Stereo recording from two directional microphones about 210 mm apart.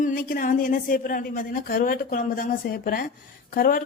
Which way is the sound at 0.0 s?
40° left (ahead or behind).